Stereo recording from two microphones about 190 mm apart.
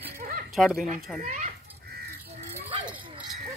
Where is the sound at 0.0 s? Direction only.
45° right (ahead or behind).